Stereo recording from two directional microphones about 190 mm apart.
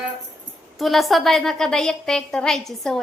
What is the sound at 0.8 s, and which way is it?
A woman's voice, centre (ahead or behind).